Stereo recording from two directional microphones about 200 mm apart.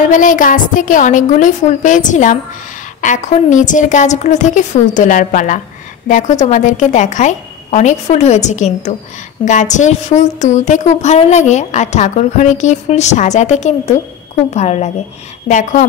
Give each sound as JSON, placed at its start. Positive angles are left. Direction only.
{"t": 0.1, "sound": "a woman's voice", "side_deg": 40}